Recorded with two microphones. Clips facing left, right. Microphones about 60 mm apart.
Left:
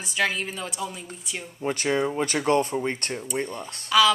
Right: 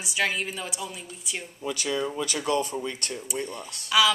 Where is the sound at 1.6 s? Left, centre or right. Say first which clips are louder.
Left 4 dB; left.